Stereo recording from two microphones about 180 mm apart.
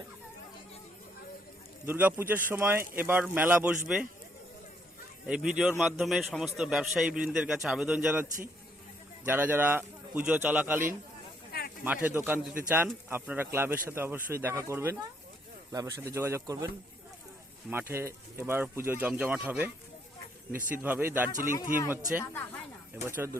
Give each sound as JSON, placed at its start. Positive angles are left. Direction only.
{"t": 1.9, "sound": "a man's voice", "side_deg": -10}
{"t": 5.2, "sound": "a man's voice", "side_deg": -5}
{"t": 12.0, "sound": "a man's voice", "side_deg": -10}
{"t": 21.3, "sound": "speech", "side_deg": -50}
{"t": 22.2, "sound": "speech", "side_deg": 15}
{"t": 23.0, "sound": "a man's voice", "side_deg": -15}